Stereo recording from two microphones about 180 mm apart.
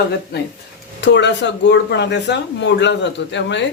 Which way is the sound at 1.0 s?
75° left (ahead or behind).